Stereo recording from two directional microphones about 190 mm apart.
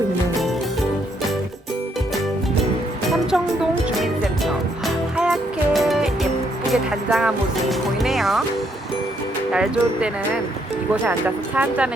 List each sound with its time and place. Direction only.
3.1 s music: centre (ahead or behind)
9.5 s speech: 5° right (ahead or behind)
11.5 s a woman's voice: 5° right (ahead or behind)